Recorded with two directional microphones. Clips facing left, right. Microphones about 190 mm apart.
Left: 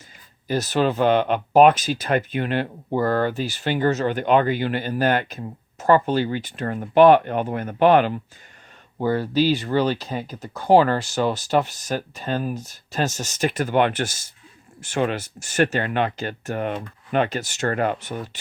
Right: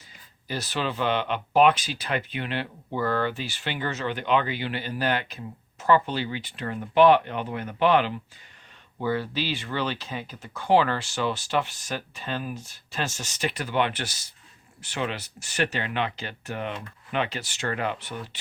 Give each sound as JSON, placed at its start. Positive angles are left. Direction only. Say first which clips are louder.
{"t": 0.4, "sound": "speech", "louder": "left 9 dB", "side_deg": 45}